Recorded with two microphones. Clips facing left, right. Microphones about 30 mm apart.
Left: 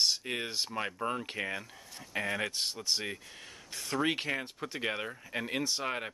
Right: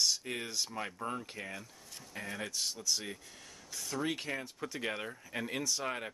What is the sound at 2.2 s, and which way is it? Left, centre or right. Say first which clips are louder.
Speech: left 4 dB; left.